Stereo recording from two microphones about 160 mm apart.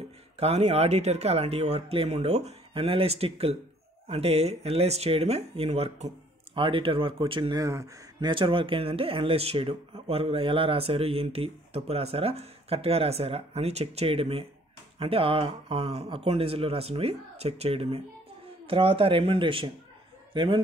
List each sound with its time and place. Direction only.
0.4 s speech: 45° right (ahead or behind)
6.5 s speech: 35° right (ahead or behind)
7.6 s speech: 20° right (ahead or behind)